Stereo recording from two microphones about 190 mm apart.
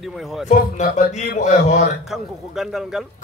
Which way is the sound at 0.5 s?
40° left (ahead or behind).